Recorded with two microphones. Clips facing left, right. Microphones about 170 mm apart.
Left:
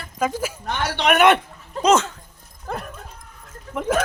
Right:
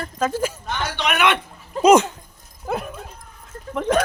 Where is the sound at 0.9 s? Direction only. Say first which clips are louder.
Left 5 dB; 55° left (ahead or behind).